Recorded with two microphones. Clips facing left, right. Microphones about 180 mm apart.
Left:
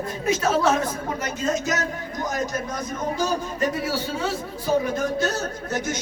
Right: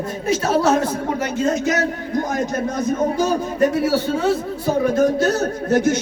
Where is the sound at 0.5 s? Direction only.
40° right (ahead or behind).